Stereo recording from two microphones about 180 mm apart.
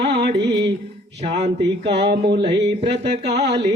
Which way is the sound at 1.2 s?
35° right (ahead or behind).